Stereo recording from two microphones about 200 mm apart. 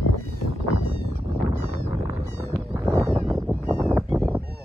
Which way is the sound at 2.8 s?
15° right (ahead or behind).